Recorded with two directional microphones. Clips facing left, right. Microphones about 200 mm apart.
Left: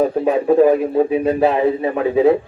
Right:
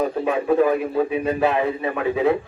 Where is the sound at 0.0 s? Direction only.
35° left (ahead or behind).